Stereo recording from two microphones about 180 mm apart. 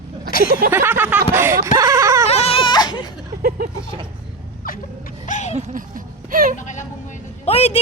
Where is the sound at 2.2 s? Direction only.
35° left (ahead or behind).